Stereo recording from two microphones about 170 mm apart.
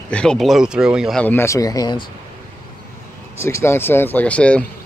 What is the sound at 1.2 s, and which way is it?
Speech, 10° left (ahead or behind).